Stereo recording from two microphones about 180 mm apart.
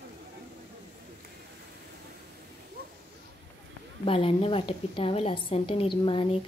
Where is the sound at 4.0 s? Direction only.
30° left (ahead or behind).